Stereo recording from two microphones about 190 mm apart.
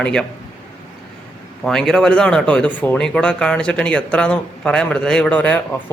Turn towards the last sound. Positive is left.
turn(degrees=5)  # may be behind; listen again after turning